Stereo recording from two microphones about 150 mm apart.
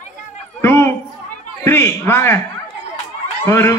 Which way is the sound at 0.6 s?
15° left (ahead or behind).